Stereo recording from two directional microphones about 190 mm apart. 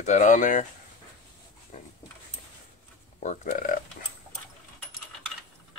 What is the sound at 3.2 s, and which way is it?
Speech, 40° left (ahead or behind).